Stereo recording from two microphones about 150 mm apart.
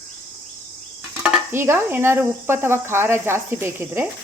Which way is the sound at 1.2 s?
10° right (ahead or behind).